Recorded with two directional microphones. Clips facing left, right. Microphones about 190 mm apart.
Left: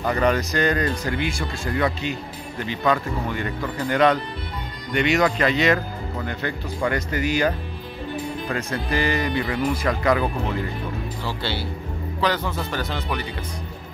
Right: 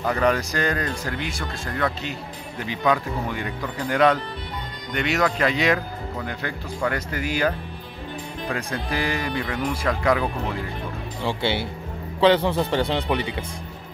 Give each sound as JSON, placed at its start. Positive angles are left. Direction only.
{"t": 0.0, "sound": "speech", "side_deg": -5}
{"t": 2.6, "sound": "speech", "side_deg": -5}
{"t": 8.7, "sound": "speech", "side_deg": 0}
{"t": 11.2, "sound": "speech", "side_deg": -20}